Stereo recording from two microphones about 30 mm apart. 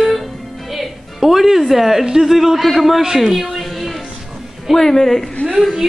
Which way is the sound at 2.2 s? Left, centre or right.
Centre.